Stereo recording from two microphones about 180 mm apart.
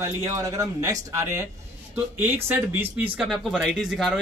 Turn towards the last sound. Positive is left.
turn(degrees=0)  # may be behind; listen again after turning